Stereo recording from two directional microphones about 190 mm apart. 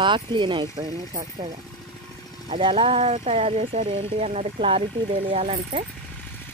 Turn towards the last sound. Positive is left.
turn(degrees=-30)  # may be behind; listen again after turning